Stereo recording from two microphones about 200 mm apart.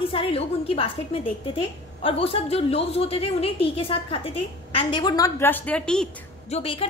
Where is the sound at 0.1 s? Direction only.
30° left (ahead or behind).